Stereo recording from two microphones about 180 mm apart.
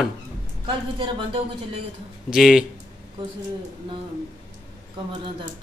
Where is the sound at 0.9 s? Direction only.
25° right (ahead or behind).